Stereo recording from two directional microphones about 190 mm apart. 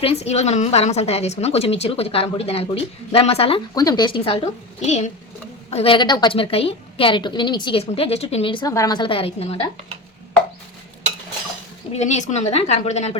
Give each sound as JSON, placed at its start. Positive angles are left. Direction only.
{"t": 0.0, "sound": "a woman's voice", "side_deg": 35}
{"t": 3.8, "sound": "a woman's voice", "side_deg": 20}
{"t": 11.9, "sound": "a woman's voice", "side_deg": 35}